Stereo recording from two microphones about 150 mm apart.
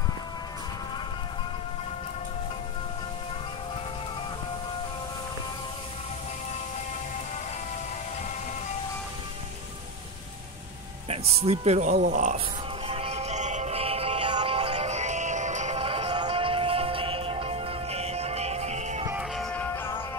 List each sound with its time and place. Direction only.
11.1 s speech: 45° right (ahead or behind)
11.9 s speech: 55° right (ahead or behind)
12.8 s music: 40° right (ahead or behind)
19.3 s music: 5° left (ahead or behind)